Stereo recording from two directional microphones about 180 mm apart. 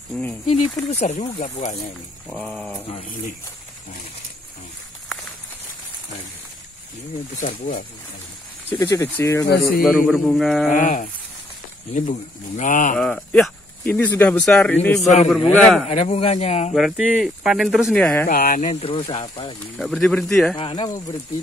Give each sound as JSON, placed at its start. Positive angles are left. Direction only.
{"t": 0.1, "sound": "speech", "side_deg": 5}
{"t": 0.5, "sound": "speech", "side_deg": 40}
{"t": 2.2, "sound": "speech", "side_deg": 5}
{"t": 7.3, "sound": "speech", "side_deg": 45}
{"t": 8.7, "sound": "speech", "side_deg": 20}
{"t": 9.5, "sound": "a man's voice", "side_deg": 60}
{"t": 9.8, "sound": "speech", "side_deg": 0}
{"t": 10.7, "sound": "speech", "side_deg": 45}
{"t": 12.9, "sound": "speech", "side_deg": 5}
{"t": 15.9, "sound": "speech", "side_deg": 30}
{"t": 16.7, "sound": "speech", "side_deg": -5}
{"t": 18.2, "sound": "speech", "side_deg": 50}
{"t": 19.8, "sound": "speech", "side_deg": 5}
{"t": 20.5, "sound": "speech", "side_deg": 25}